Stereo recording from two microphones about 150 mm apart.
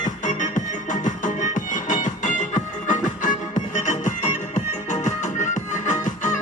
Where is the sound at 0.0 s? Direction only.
55° left (ahead or behind).